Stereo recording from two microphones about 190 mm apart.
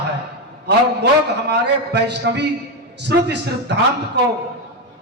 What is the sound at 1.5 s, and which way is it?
A man's voice, 65° right (ahead or behind).